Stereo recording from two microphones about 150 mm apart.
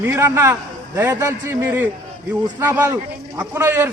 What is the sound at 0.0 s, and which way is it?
A man's voice, 15° right (ahead or behind).